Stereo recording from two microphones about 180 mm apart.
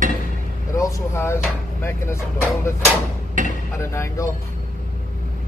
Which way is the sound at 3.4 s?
45° right (ahead or behind).